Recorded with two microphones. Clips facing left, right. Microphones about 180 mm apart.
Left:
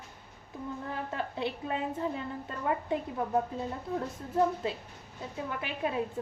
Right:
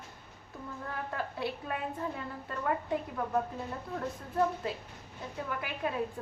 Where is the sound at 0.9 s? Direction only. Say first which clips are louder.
Right 1 dB; 20° left (ahead or behind).